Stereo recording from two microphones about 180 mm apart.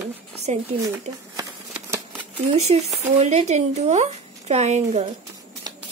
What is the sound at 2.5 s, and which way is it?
Speech, 35° right (ahead or behind).